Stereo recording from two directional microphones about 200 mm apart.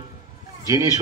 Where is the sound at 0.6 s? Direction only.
15° right (ahead or behind).